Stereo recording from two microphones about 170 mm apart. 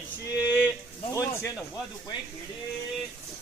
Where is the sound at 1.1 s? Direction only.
20° left (ahead or behind).